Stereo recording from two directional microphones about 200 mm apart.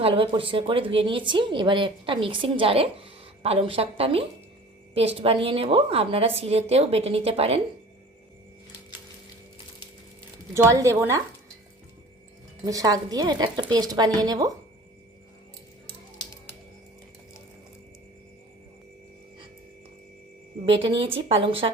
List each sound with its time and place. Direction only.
0.0 s speech: 25° right (ahead or behind)
10.5 s a woman's voice: 15° right (ahead or behind)
12.6 s speech: 20° right (ahead or behind)
20.7 s speech: 25° right (ahead or behind)